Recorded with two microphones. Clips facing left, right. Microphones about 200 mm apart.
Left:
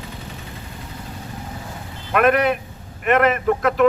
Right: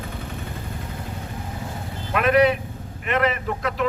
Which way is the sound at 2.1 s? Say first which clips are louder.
Left 1 dB; 55° left (ahead or behind).